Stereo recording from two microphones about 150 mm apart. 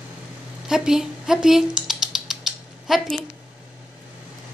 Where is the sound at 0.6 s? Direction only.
5° right (ahead or behind).